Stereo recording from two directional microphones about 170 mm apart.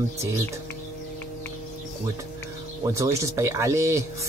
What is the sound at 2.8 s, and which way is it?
Speech, 15° right (ahead or behind).